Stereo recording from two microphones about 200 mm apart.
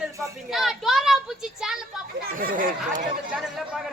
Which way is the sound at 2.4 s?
45° right (ahead or behind).